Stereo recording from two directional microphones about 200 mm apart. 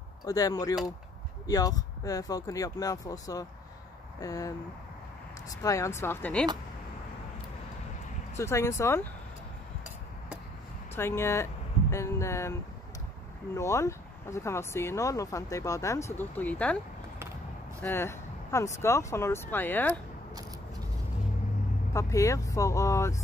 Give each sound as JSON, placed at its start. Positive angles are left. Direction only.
{"t": 0.2, "sound": "speech", "side_deg": 20}
{"t": 5.6, "sound": "speech", "side_deg": 15}
{"t": 8.4, "sound": "speech", "side_deg": 15}
{"t": 11.0, "sound": "speech", "side_deg": 10}
{"t": 13.6, "sound": "speech", "side_deg": 15}
{"t": 17.8, "sound": "speech", "side_deg": 10}
{"t": 21.9, "sound": "speech", "side_deg": 15}